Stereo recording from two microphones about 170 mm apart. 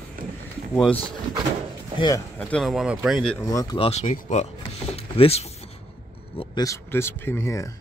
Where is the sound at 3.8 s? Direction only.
40° left (ahead or behind).